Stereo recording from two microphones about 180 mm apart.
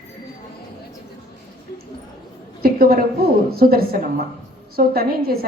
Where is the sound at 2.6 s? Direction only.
55° right (ahead or behind).